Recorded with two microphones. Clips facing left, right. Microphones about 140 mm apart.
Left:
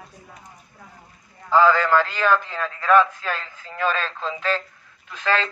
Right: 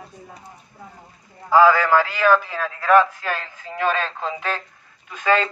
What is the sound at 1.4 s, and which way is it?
A man's voice, 10° right (ahead or behind).